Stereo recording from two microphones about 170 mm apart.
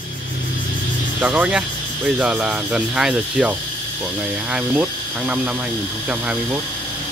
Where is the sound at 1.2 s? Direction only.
5° right (ahead or behind).